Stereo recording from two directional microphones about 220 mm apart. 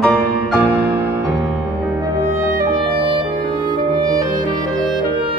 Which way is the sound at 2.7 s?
20° right (ahead or behind).